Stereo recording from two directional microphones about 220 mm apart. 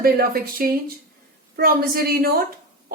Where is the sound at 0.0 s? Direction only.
40° right (ahead or behind).